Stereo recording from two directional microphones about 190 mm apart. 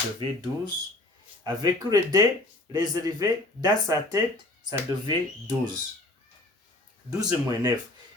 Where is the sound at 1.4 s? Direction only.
20° right (ahead or behind).